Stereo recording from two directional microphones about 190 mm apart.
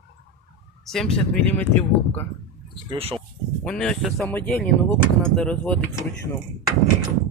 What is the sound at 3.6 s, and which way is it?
Speech, 5° left (ahead or behind).